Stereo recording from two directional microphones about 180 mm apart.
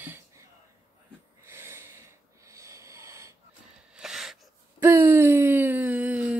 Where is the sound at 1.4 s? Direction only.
15° right (ahead or behind).